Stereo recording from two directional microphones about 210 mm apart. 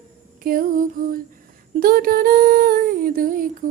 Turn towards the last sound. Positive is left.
turn(degrees=-40)  # may be behind; listen again after turning